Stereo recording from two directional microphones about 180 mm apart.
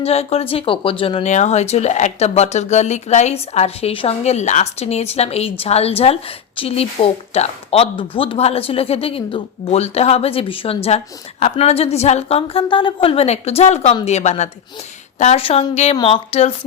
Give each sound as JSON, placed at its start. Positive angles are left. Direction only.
{"t": 0.0, "sound": "speech", "side_deg": 35}